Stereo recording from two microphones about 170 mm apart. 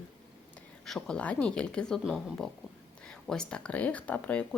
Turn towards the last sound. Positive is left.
turn(degrees=10)  # may be behind; listen again after turning